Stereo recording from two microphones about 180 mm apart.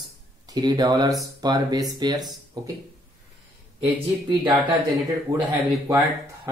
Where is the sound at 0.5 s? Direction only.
20° right (ahead or behind).